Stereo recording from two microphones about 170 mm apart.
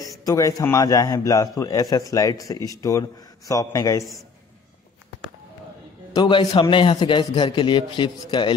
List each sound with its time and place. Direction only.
0.2 s a man's voice: 20° left (ahead or behind)
6.1 s a man's voice: 25° left (ahead or behind)